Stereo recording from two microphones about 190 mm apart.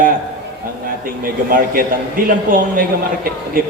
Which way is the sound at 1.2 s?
50° right (ahead or behind).